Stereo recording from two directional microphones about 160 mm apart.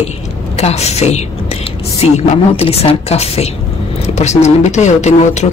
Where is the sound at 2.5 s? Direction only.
40° left (ahead or behind).